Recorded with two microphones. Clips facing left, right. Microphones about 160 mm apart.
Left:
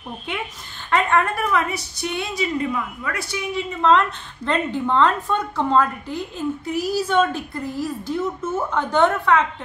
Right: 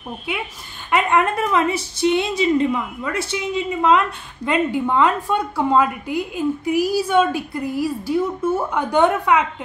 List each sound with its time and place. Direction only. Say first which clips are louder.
0.3 s a woman's voice: right 2 dB; 10° right (ahead or behind); by 3.6 s 25° right (ahead or behind)
4.5 s a woman's voice: right 2 dB; 10° right (ahead or behind)